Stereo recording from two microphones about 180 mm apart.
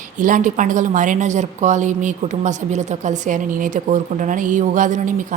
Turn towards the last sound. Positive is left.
turn(degrees=-45)  # may be behind; listen again after turning